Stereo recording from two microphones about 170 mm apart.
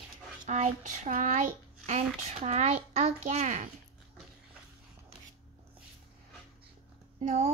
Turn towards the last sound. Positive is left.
turn(degrees=-40)  # may be behind; listen again after turning